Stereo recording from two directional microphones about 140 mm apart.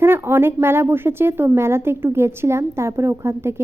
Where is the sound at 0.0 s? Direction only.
15° right (ahead or behind).